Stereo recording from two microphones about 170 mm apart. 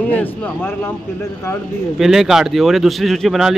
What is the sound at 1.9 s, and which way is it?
Speech, centre (ahead or behind).